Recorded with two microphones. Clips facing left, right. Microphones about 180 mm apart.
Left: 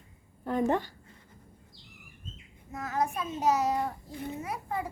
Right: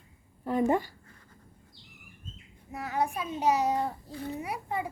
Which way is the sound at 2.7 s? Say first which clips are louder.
Even; 15° right (ahead or behind).